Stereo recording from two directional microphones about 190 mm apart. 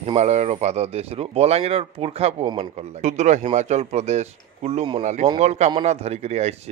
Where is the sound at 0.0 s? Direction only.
35° right (ahead or behind).